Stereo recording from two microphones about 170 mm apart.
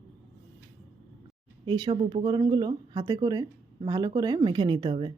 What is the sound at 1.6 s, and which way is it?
Speech, 25° right (ahead or behind).